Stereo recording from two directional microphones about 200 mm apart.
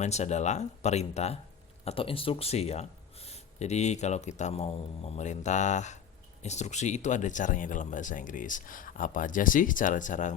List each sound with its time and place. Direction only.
0.0 s speech: 35° left (ahead or behind)